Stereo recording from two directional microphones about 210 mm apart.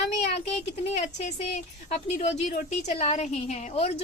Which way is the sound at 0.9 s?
30° left (ahead or behind).